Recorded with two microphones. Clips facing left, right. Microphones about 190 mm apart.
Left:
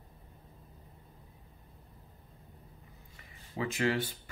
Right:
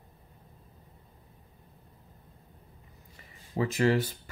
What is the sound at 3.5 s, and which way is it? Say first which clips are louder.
Speech: right 5 dB; 40° right (ahead or behind).